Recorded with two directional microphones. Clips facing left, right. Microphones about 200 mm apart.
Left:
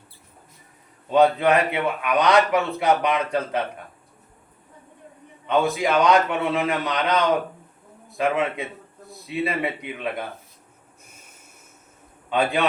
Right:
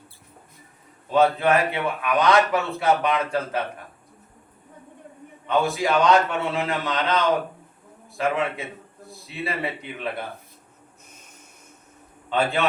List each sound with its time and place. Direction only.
1.1 s a man's voice: 20° left (ahead or behind)
5.5 s a man's voice: 20° left (ahead or behind)
11.1 s snort: 10° left (ahead or behind)
12.3 s speech: 15° left (ahead or behind)